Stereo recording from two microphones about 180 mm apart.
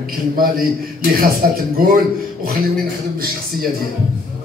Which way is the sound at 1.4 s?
55° right (ahead or behind).